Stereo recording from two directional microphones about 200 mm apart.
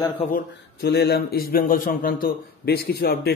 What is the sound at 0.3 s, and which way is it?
A man's voice, 55° left (ahead or behind).